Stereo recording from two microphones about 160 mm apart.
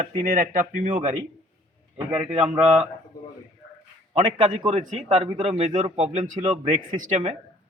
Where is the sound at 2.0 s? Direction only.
10° right (ahead or behind).